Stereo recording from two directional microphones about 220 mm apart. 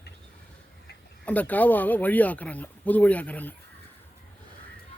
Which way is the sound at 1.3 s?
5° left (ahead or behind).